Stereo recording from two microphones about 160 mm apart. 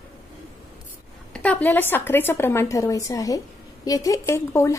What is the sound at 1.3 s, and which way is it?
A woman's voice, 10° left (ahead or behind).